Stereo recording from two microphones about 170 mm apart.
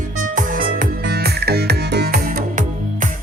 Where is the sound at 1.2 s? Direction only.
70° right (ahead or behind).